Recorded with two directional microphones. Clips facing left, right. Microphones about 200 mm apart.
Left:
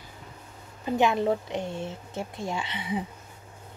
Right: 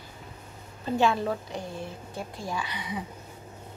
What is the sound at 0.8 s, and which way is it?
Speech, 20° left (ahead or behind).